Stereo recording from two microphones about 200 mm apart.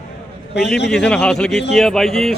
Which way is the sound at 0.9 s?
5° left (ahead or behind).